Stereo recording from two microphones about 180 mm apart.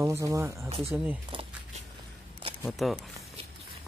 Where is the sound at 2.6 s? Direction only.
Centre (ahead or behind).